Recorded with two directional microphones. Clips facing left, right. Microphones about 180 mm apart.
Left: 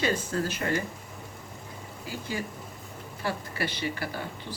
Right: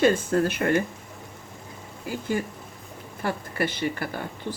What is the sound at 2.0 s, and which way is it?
Speech, 50° right (ahead or behind).